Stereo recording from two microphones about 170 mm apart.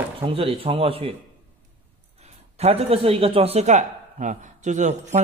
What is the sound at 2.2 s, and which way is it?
Speech, 40° right (ahead or behind).